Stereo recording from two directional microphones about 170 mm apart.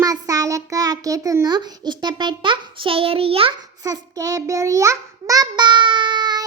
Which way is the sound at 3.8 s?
20° right (ahead or behind).